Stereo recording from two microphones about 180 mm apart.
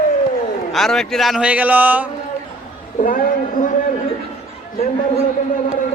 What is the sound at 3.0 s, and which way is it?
Speech, 50° left (ahead or behind).